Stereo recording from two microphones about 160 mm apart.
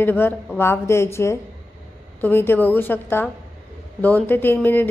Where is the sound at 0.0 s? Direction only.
15° left (ahead or behind).